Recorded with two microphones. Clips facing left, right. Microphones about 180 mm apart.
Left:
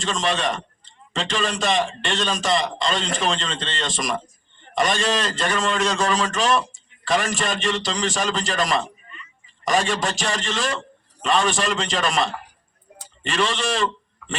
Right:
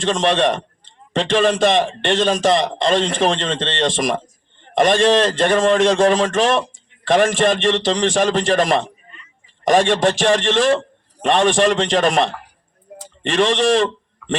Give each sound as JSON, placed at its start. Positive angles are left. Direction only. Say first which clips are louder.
{"t": 0.0, "sound": "a man's voice", "louder": "right 7 dB", "side_deg": -50}